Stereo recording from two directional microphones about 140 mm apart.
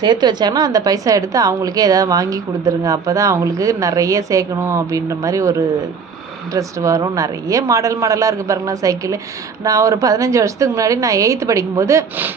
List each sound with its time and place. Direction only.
0.0 s a woman's voice: 30° right (ahead or behind)